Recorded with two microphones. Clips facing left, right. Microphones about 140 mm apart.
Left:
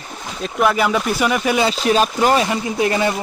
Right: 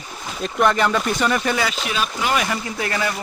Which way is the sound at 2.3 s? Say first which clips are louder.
Left 5 dB; 25° left (ahead or behind).